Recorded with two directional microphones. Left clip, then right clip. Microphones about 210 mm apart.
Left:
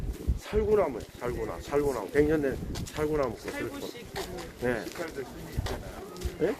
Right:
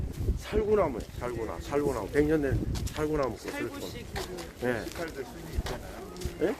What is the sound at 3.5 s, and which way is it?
Speech, 25° right (ahead or behind).